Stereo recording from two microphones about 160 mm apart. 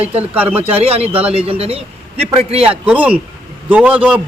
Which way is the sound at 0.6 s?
35° right (ahead or behind).